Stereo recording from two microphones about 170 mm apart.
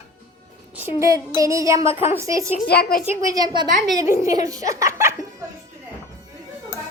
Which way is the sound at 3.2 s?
20° right (ahead or behind).